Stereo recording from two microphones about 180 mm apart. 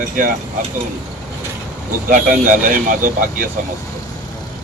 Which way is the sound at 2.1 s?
50° right (ahead or behind).